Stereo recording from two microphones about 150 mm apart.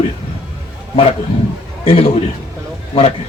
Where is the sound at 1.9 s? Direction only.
40° left (ahead or behind).